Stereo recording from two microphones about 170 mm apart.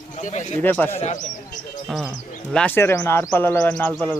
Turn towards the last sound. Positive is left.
turn(degrees=5)  # may be behind; listen again after turning